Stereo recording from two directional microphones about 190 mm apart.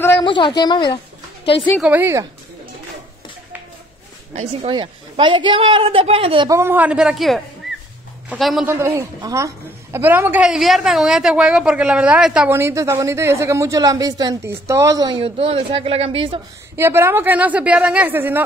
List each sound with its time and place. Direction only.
0.2 s a woman's voice: 25° left (ahead or behind)
1.8 s a woman's voice: 10° right (ahead or behind)
4.4 s a woman's voice: 30° right (ahead or behind)
6.6 s speech: 10° right (ahead or behind)
8.6 s a woman's voice: 10° right (ahead or behind); by 16.3 s 30° right (ahead or behind)
16.7 s a woman's voice: 10° right (ahead or behind)